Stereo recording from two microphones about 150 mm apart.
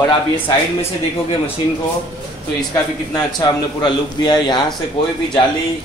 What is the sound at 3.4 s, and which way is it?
A man's voice, 30° left (ahead or behind).